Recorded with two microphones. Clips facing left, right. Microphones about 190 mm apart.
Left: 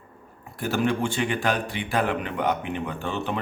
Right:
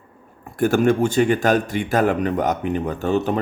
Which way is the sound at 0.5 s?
50° right (ahead or behind).